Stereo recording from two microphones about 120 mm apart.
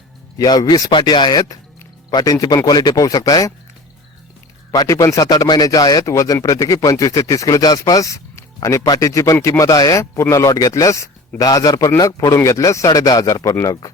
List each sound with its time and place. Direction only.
0.3 s speech: 35° left (ahead or behind)
4.7 s speech: 30° left (ahead or behind)